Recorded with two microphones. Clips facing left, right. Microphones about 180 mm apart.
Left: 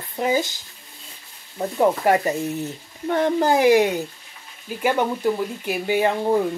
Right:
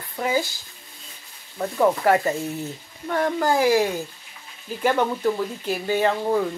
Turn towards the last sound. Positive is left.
turn(degrees=15)  # may be behind; listen again after turning